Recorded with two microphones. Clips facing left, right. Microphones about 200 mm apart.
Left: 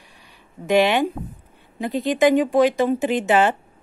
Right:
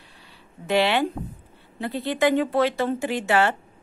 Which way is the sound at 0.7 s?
15° left (ahead or behind).